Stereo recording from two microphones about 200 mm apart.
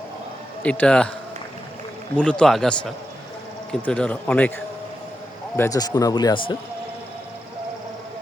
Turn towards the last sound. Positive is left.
turn(degrees=20)  # may be behind; listen again after turning